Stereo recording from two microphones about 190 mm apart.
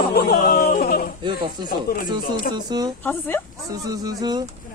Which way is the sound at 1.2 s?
25° right (ahead or behind).